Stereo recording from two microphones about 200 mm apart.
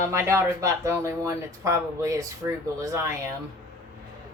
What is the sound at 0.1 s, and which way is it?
Speech, 15° right (ahead or behind).